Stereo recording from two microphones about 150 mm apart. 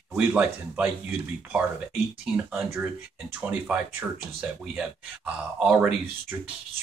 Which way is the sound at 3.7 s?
10° right (ahead or behind).